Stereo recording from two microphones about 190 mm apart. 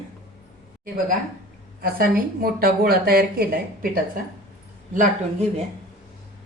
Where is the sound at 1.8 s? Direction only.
50° right (ahead or behind).